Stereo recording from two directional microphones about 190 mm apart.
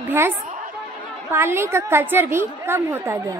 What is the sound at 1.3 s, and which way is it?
A woman's voice, 15° right (ahead or behind).